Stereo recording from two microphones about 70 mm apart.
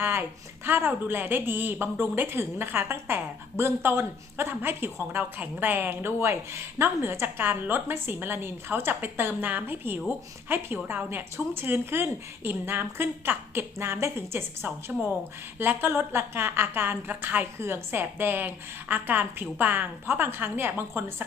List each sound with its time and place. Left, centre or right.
0.0 s speech: right